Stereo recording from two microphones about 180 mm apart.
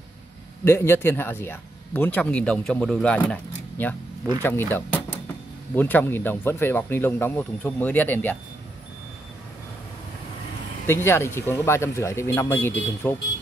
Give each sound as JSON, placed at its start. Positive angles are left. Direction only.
{"t": 0.7, "sound": "speech", "side_deg": 15}
{"t": 10.9, "sound": "speech", "side_deg": 15}